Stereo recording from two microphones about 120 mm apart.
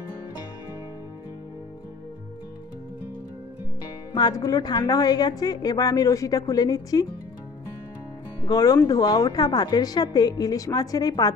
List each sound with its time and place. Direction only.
4.1 s a woman's voice: 35° left (ahead or behind)
8.5 s a woman's voice: 30° left (ahead or behind)